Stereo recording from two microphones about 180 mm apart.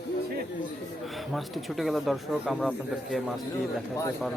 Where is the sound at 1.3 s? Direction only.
Centre (ahead or behind).